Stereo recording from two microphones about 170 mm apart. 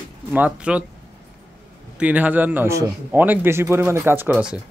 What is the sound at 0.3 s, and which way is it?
Speech, 10° right (ahead or behind).